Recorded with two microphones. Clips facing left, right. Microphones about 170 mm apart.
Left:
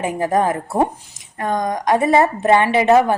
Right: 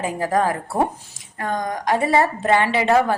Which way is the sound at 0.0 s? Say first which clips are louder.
Left 3 dB; 20° left (ahead or behind).